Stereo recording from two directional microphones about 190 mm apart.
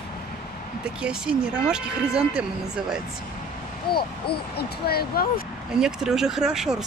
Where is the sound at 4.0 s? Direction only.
55° left (ahead or behind).